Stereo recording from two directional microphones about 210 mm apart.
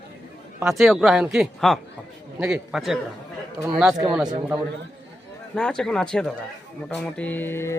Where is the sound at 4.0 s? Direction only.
5° right (ahead or behind).